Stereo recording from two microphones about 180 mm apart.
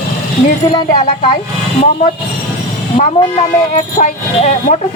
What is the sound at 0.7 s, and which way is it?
Speech, 25° left (ahead or behind).